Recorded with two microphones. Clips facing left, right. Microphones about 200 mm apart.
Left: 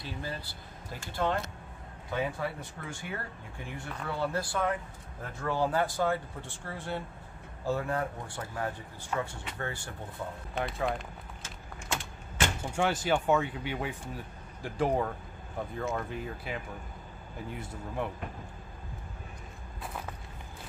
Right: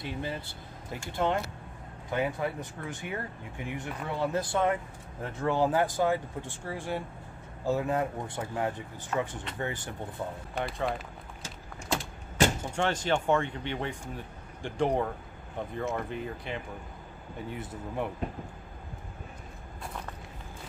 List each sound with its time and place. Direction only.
0.0 s speech: 20° right (ahead or behind)
2.9 s speech: 15° right (ahead or behind)
10.5 s speech: centre (ahead or behind)
11.4 s keys jangling: 35° right (ahead or behind)
12.7 s speech: 10° left (ahead or behind)